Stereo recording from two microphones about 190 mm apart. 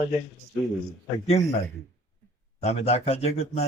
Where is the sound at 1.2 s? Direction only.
35° left (ahead or behind).